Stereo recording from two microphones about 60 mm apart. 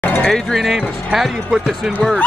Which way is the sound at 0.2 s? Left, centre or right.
Centre.